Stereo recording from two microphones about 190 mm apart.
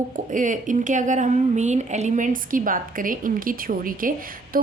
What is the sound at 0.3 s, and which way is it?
A woman's voice, 45° right (ahead or behind).